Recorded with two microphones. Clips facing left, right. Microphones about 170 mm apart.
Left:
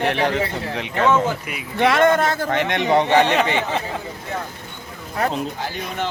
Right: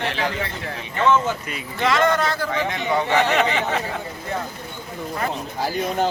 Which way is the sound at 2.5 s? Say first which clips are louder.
Left 4 dB; 75° left (ahead or behind).